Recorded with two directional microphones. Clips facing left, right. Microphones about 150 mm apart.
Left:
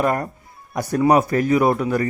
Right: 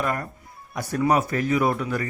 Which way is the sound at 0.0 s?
40° left (ahead or behind).